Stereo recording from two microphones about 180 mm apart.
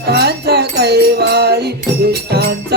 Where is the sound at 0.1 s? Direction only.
65° right (ahead or behind).